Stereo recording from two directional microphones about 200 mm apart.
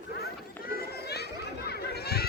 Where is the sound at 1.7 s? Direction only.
50° left (ahead or behind).